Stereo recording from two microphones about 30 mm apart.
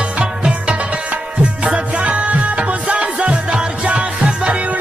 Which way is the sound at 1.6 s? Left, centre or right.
Right.